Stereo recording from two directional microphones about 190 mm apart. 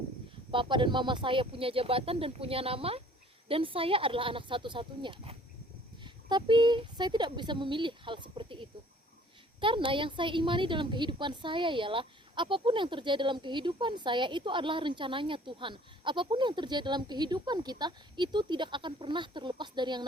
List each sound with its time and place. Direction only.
0.5 s a woman's voice: 25° right (ahead or behind)